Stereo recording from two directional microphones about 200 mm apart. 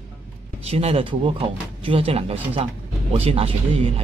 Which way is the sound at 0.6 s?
30° right (ahead or behind).